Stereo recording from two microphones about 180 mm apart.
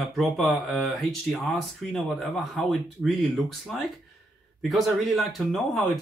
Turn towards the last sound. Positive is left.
turn(degrees=0)  # may be behind; listen again after turning